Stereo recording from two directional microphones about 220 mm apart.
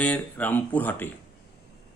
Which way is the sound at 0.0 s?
5° left (ahead or behind).